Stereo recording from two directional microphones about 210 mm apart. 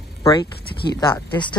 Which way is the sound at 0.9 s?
20° left (ahead or behind).